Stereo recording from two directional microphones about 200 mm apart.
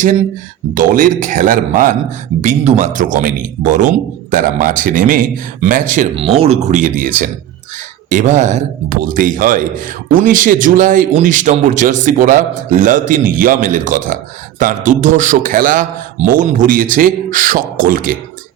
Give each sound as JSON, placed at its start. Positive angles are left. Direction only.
{"t": 0.7, "sound": "a man's voice", "side_deg": -40}
{"t": 6.1, "sound": "a man's voice", "side_deg": -30}
{"t": 8.1, "sound": "a man's voice", "side_deg": -40}